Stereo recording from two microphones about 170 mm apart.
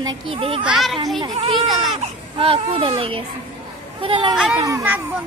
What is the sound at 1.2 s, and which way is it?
Speech, 30° right (ahead or behind).